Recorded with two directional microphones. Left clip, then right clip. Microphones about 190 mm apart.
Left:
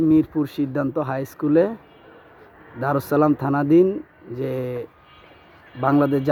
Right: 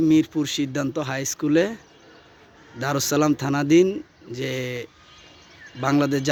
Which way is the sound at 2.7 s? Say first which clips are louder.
Left 2 dB; 5° left (ahead or behind).